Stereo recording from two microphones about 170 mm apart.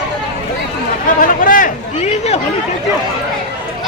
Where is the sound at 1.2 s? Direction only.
50° left (ahead or behind).